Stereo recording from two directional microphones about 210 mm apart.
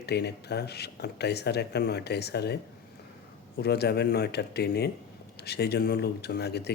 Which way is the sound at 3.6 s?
50° left (ahead or behind).